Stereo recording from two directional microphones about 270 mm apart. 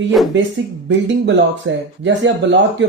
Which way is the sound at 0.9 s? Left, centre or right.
Right.